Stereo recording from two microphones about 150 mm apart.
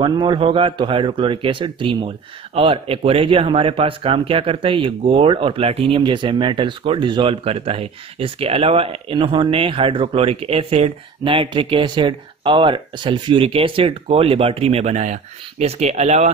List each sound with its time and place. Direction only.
0.0 s speech: 30° right (ahead or behind); by 16.3 s 45° right (ahead or behind)